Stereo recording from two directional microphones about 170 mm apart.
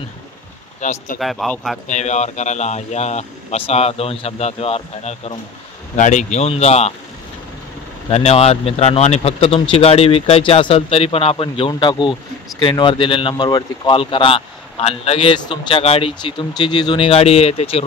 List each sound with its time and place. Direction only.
0.7 s speech: 45° left (ahead or behind)
1.2 s speech: centre (ahead or behind)
1.9 s a man's voice: 40° left (ahead or behind)
8.1 s a man's voice: 35° left (ahead or behind)